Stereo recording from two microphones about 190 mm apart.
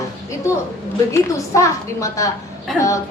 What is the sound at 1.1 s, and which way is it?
A woman's voice, 15° left (ahead or behind).